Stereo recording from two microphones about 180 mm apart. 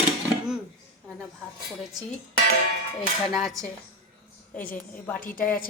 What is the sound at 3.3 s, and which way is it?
A woman's voice, centre (ahead or behind).